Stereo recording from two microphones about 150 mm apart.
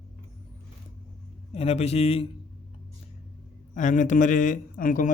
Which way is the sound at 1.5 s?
45° left (ahead or behind).